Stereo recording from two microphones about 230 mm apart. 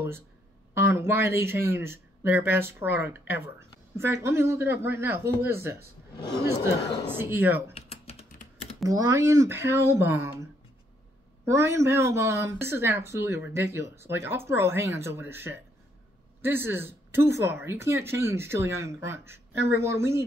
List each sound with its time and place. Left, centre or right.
0.7 s speech: centre
7.1 s speech: centre
7.7 s typing: left
8.8 s speech: centre
11.4 s speech: centre